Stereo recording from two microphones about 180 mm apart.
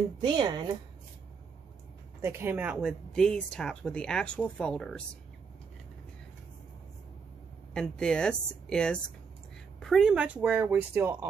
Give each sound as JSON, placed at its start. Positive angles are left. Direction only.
{"t": 0.2, "sound": "a woman's voice", "side_deg": -25}
{"t": 2.2, "sound": "speech", "side_deg": -15}
{"t": 7.7, "sound": "a woman's voice", "side_deg": 5}